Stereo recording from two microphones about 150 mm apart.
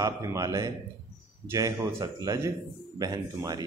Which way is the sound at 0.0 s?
20° right (ahead or behind).